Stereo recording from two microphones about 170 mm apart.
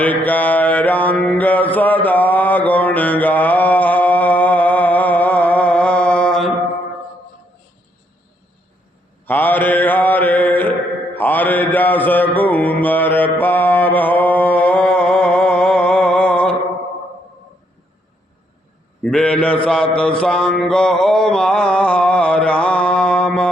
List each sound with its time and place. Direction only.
0.0 s mantra: 10° left (ahead or behind)
9.2 s mantra: 10° left (ahead or behind)
19.1 s mantra: 5° left (ahead or behind)